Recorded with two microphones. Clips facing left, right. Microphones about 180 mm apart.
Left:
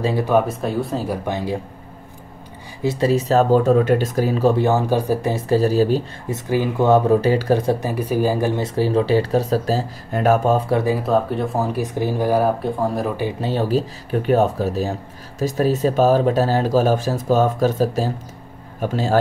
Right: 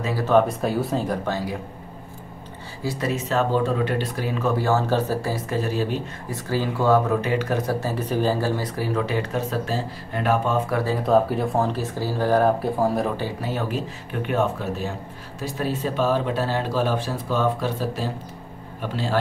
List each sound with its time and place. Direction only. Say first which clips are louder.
0.2 s speech: right 3 dB; 10° left (ahead or behind)
2.8 s speech: left 8 dB; 25° left (ahead or behind)
4.6 s speech: left 3 dB; 15° left (ahead or behind)
5.3 s speech: left 8 dB; 35° left (ahead or behind)
6.3 s speech: left 5 dB; 20° left (ahead or behind)
7.2 s speech: left 6 dB; 35° left (ahead or behind)
7.8 s speech: left 3 dB; 10° left (ahead or behind); by 10.6 s 45° left (ahead or behind)
11.1 s speech: even; centre (ahead or behind)
13.4 s speech: left 7 dB; 30° left (ahead or behind)